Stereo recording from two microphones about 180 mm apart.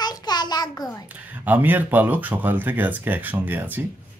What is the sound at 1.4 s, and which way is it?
Speech, 10° right (ahead or behind).